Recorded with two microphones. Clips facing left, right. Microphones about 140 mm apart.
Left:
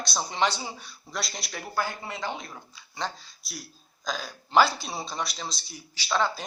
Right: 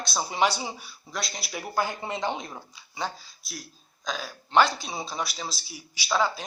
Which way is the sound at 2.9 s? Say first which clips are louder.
Right 1 dB; 5° right (ahead or behind).